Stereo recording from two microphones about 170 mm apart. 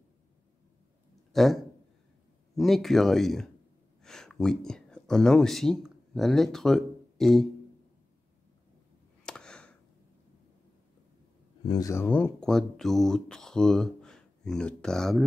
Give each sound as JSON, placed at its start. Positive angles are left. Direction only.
{"t": 1.3, "sound": "speech", "side_deg": 0}
{"t": 9.2, "sound": "a sound", "side_deg": 5}
{"t": 11.6, "sound": "speech", "side_deg": 20}